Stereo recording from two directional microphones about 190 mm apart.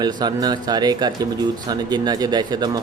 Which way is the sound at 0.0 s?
20° right (ahead or behind).